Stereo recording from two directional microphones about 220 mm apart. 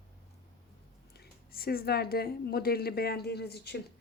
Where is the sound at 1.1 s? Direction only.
45° left (ahead or behind).